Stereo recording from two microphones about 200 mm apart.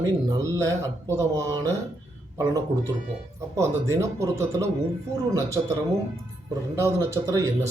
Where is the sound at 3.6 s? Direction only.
15° right (ahead or behind).